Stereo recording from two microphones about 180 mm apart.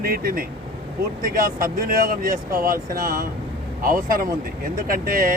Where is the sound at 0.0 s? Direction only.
55° right (ahead or behind).